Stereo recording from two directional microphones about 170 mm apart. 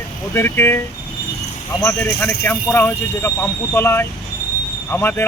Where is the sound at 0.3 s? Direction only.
15° left (ahead or behind).